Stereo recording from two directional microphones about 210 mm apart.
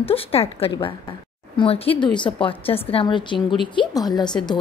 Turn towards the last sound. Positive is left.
turn(degrees=20)  # may be behind; listen again after turning